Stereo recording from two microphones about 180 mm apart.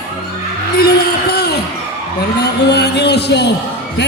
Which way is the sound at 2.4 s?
65° left (ahead or behind).